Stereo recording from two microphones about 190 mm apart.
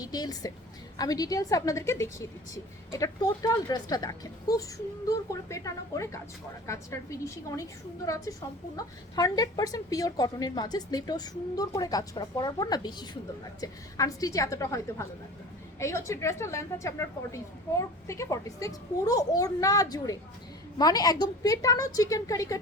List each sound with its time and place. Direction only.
0.0 s a woman's voice: 20° left (ahead or behind)